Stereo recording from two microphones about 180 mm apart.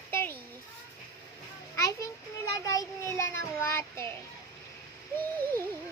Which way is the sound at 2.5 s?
20° left (ahead or behind).